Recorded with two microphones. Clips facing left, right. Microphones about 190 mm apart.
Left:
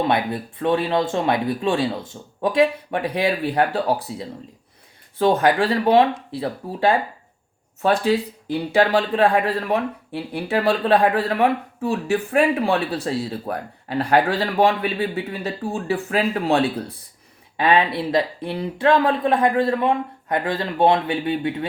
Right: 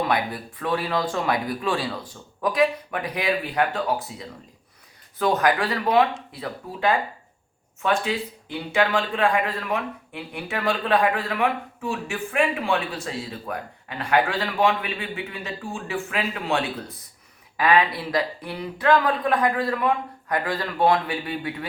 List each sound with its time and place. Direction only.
0.0 s speech: 25° left (ahead or behind)